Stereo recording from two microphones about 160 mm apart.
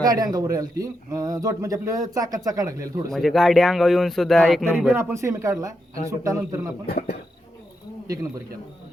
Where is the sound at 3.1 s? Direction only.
Centre (ahead or behind).